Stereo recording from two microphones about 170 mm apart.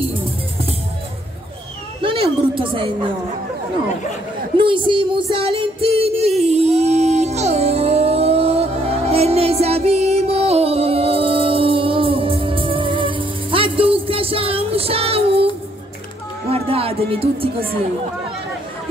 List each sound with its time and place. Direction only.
2.0 s speech: 30° right (ahead or behind)
4.6 s music: 30° right (ahead or behind)
16.4 s a sound: 35° right (ahead or behind)